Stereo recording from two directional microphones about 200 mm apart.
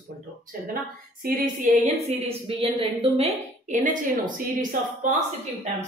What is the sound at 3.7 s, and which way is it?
Speech, 40° right (ahead or behind).